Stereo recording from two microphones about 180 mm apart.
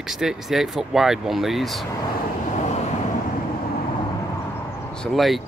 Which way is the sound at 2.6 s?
40° left (ahead or behind).